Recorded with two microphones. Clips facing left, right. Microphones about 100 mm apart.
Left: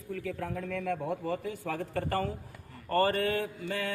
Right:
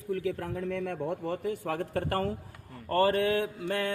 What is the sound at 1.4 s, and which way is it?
Speech, 60° right (ahead or behind).